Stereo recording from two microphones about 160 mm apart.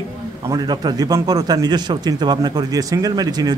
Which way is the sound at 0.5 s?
25° right (ahead or behind).